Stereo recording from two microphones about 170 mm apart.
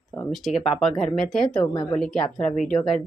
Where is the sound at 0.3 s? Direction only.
Centre (ahead or behind).